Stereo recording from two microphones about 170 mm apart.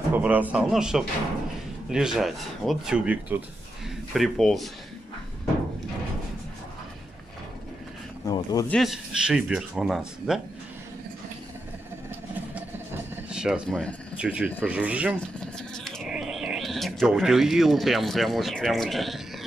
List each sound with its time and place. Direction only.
0.1 s speech: 10° right (ahead or behind)
8.2 s speech: 20° left (ahead or behind)
8.6 s speech: centre (ahead or behind)
12.5 s a sound: 10° right (ahead or behind)
14.1 s speech: 5° right (ahead or behind)